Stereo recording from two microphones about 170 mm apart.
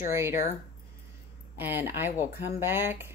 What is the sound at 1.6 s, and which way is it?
Speech, 10° right (ahead or behind).